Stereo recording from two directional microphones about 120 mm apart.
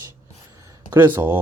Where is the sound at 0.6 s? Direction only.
35° right (ahead or behind).